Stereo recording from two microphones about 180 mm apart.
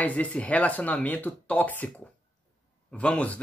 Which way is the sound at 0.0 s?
10° left (ahead or behind).